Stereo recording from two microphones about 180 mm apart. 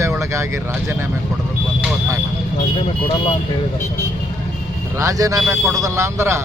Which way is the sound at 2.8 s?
30° left (ahead or behind).